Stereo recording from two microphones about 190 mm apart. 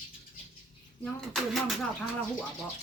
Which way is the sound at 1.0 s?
Centre (ahead or behind).